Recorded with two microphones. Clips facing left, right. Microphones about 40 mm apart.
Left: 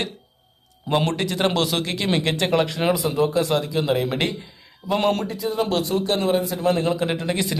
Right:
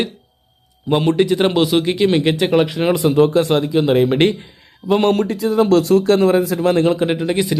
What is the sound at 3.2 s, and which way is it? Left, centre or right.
Speech, right.